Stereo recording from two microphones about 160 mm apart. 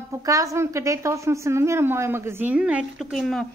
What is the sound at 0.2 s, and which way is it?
A woman's voice, 20° right (ahead or behind).